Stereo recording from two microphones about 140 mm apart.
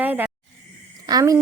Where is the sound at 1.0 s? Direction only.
25° right (ahead or behind).